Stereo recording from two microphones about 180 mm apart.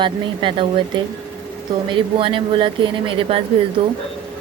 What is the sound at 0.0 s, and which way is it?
Speech, 25° right (ahead or behind).